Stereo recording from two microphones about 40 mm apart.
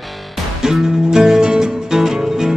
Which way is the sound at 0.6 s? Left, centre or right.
Centre.